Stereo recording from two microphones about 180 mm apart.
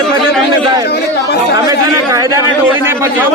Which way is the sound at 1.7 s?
20° right (ahead or behind).